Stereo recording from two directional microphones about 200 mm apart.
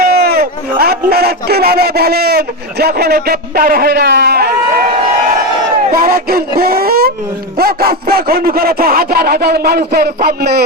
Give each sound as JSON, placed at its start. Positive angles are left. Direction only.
{"t": 0.0, "sound": "a man's voice", "side_deg": -50}
{"t": 5.9, "sound": "speech", "side_deg": -50}